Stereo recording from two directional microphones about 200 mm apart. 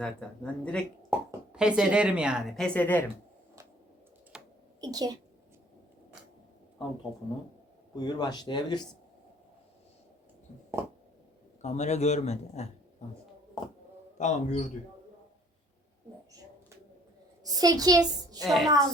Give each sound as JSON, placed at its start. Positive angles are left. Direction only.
{"t": 0.0, "sound": "speech", "side_deg": 5}
{"t": 1.1, "sound": "speech", "side_deg": -10}
{"t": 4.3, "sound": "computer keyboard", "side_deg": -5}
{"t": 4.8, "sound": "a woman's voice", "side_deg": -20}
{"t": 7.9, "sound": "speech", "side_deg": 20}
{"t": 10.8, "sound": "a sound", "side_deg": -15}
{"t": 11.6, "sound": "speech", "side_deg": 35}
{"t": 14.2, "sound": "speech", "side_deg": 35}
{"t": 17.4, "sound": "a child's voice", "side_deg": -20}
{"t": 18.4, "sound": "speech", "side_deg": 0}